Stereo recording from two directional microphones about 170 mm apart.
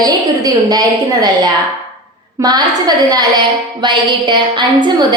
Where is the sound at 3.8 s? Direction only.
25° right (ahead or behind).